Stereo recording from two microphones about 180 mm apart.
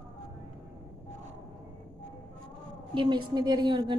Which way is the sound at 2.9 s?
25° right (ahead or behind).